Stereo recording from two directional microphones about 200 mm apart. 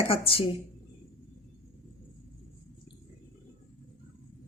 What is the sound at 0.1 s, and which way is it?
Speech, 25° left (ahead or behind).